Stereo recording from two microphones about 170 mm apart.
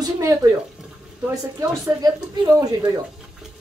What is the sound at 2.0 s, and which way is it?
A woman's voice, 20° right (ahead or behind).